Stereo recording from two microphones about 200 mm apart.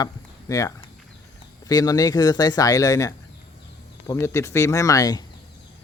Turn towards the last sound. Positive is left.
turn(degrees=20)  # may be behind; listen again after turning